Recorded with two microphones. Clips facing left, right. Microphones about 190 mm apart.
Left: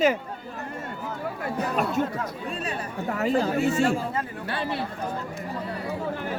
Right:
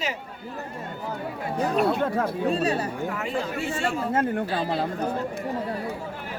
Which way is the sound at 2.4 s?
35° right (ahead or behind).